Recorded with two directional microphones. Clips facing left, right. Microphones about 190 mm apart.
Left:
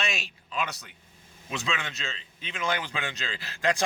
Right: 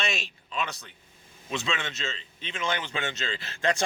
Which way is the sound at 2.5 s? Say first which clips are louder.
Left 1 dB; 25° right (ahead or behind).